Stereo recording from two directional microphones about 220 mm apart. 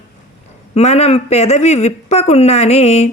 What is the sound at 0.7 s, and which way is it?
Speech, 30° left (ahead or behind).